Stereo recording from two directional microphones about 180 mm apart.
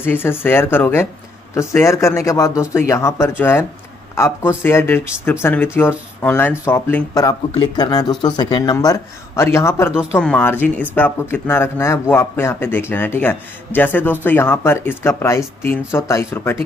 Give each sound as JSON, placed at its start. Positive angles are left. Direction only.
{"t": 0.0, "sound": "speech", "side_deg": 10}
{"t": 7.2, "sound": "speech", "side_deg": 20}